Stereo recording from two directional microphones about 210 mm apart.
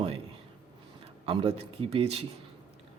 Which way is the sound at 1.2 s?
25° right (ahead or behind).